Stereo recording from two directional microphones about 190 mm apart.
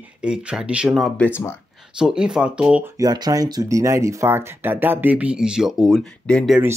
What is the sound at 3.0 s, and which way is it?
Speech, 20° right (ahead or behind).